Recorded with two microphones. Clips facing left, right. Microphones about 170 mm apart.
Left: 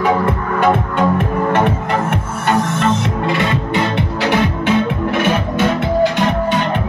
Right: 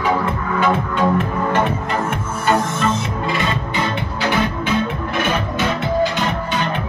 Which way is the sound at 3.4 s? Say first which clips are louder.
Left 4 dB; 70° left (ahead or behind).